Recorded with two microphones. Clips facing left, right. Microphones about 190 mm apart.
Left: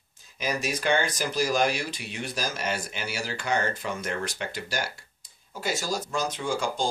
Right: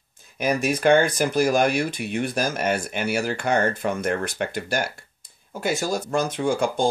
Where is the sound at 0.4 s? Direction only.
55° right (ahead or behind).